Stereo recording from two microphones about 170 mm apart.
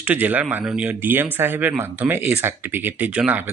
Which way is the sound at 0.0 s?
10° right (ahead or behind).